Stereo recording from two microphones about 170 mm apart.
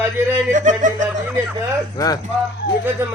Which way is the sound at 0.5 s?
45° right (ahead or behind).